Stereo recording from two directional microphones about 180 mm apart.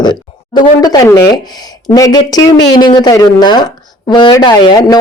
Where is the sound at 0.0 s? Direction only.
25° left (ahead or behind).